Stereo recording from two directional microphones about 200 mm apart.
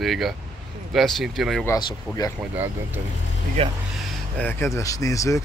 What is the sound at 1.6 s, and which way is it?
Speech, 15° left (ahead or behind).